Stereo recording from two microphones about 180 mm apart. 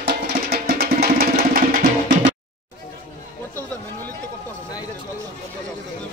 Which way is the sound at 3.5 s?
10° left (ahead or behind).